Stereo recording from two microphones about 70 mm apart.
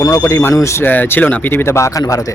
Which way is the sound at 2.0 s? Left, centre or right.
Left.